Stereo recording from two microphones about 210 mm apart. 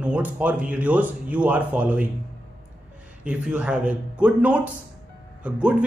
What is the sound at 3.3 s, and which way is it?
Speech, 5° right (ahead or behind).